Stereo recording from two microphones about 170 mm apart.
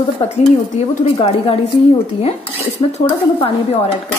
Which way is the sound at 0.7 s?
35° left (ahead or behind).